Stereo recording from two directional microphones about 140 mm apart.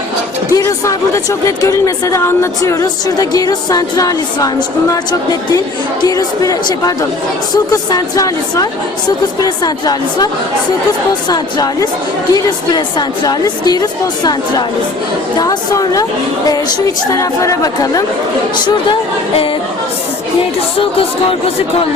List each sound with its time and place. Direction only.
0.5 s a woman's voice: 20° left (ahead or behind)
11.3 s a woman's voice: 25° left (ahead or behind)
15.4 s a woman's voice: 25° left (ahead or behind)
17.1 s a woman's voice: 25° left (ahead or behind)
20.7 s speech: 40° left (ahead or behind)